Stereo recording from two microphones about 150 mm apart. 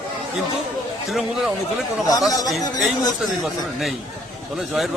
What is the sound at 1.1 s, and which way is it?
Speech, centre (ahead or behind).